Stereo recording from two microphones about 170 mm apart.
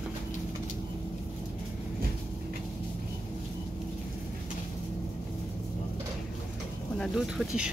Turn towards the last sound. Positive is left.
turn(degrees=-5)  # may be behind; listen again after turning